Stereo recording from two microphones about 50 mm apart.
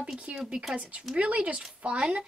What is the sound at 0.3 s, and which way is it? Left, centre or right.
A woman's voice, right.